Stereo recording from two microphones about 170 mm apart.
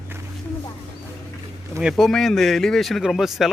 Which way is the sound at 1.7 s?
Centre (ahead or behind).